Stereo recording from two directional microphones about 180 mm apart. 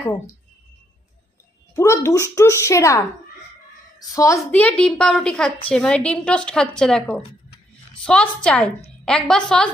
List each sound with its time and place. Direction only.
1.8 s speech: 15° left (ahead or behind)
4.1 s a woman's voice: 15° left (ahead or behind)